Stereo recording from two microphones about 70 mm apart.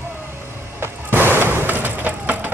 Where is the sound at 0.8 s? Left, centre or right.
Right.